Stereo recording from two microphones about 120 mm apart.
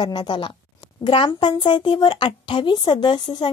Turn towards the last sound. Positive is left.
turn(degrees=35)  # may be behind; listen again after turning